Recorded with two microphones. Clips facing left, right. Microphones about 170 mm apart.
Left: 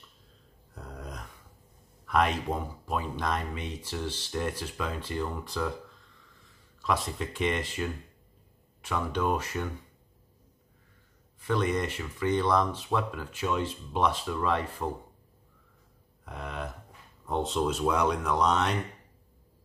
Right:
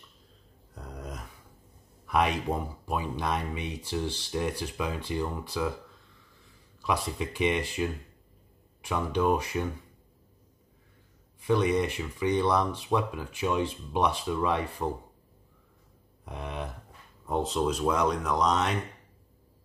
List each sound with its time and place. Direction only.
0.7 s a sound: centre (ahead or behind)
2.0 s speech: 10° right (ahead or behind)
6.9 s speech: 10° right (ahead or behind)
11.4 s speech: 10° right (ahead or behind)
16.3 s speech: 15° right (ahead or behind)
17.3 s speech: centre (ahead or behind)